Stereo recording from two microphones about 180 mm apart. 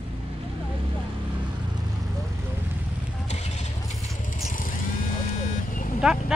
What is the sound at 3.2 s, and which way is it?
Vehicle, 40° left (ahead or behind).